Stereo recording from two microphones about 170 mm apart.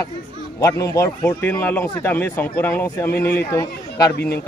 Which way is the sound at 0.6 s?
20° left (ahead or behind).